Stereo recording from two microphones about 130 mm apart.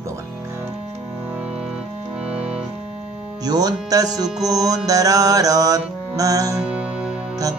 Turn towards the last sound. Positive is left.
turn(degrees=-10)  # may be behind; listen again after turning